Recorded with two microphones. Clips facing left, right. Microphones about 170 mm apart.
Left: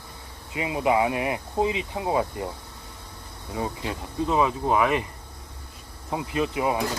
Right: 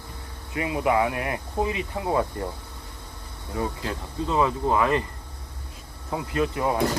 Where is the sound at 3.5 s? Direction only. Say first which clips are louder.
Right 1 dB; 15° left (ahead or behind).